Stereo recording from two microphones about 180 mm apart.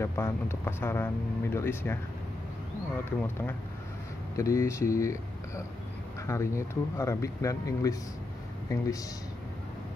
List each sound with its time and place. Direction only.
0.0 s speech: 15° left (ahead or behind)
3.1 s speech: 10° left (ahead or behind)